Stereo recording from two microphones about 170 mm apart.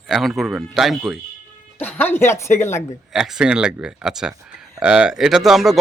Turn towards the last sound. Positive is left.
turn(degrees=0)  # may be behind; listen again after turning